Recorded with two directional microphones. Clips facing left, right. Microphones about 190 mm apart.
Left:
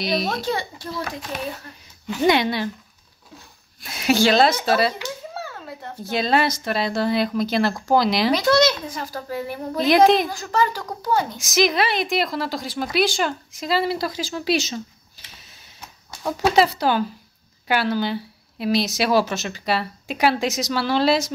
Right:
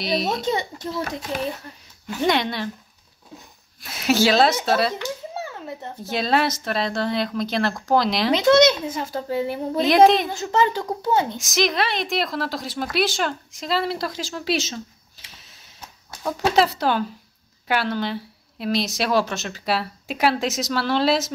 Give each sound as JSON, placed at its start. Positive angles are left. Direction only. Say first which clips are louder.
{"t": 0.0, "sound": "speech", "louder": "even", "side_deg": 0}
{"t": 0.4, "sound": "speech", "louder": "right 1 dB", "side_deg": -20}
{"t": 2.2, "sound": "speech", "louder": "left 3 dB", "side_deg": 5}
{"t": 3.8, "sound": "speech", "louder": "left 1 dB", "side_deg": 0}
{"t": 5.3, "sound": "a sound", "louder": "right 2 dB", "side_deg": -20}
{"t": 6.0, "sound": "speech", "louder": "left 1 dB", "side_deg": 0}
{"t": 8.3, "sound": "a child's voice", "louder": "right 5 dB", "side_deg": -20}
{"t": 9.8, "sound": "speech", "louder": "even", "side_deg": 0}
{"t": 10.3, "sound": "a child's voice", "louder": "right 2 dB", "side_deg": -25}
{"t": 11.3, "sound": "speech", "louder": "left 2 dB", "side_deg": 0}